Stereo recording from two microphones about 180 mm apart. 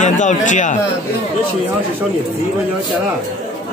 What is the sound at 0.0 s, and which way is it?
Speech, 45° left (ahead or behind).